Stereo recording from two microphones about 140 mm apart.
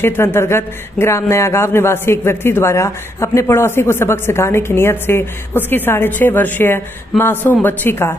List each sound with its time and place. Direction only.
0.0 s speech: 15° left (ahead or behind)